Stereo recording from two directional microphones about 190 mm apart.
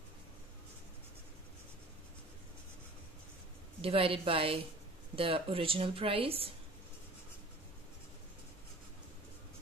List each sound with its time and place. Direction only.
3.8 s speech: 30° right (ahead or behind)